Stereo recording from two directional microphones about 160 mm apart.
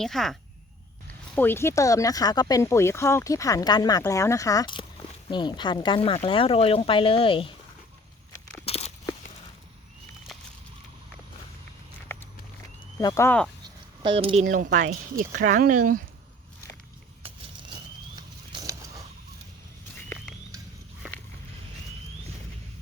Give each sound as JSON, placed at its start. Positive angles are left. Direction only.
{"t": 0.0, "sound": "speech", "side_deg": 0}
{"t": 1.0, "sound": "speech", "side_deg": 10}
{"t": 8.6, "sound": "crunch", "side_deg": 40}
{"t": 10.3, "sound": "a sound", "side_deg": 0}
{"t": 13.0, "sound": "speech", "side_deg": 20}
{"t": 14.0, "sound": "speech", "side_deg": -30}
{"t": 14.4, "sound": "speech", "side_deg": -55}
{"t": 18.2, "sound": "a sound", "side_deg": -25}